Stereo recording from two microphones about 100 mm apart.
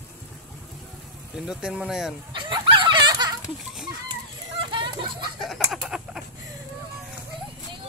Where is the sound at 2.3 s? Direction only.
55° right (ahead or behind).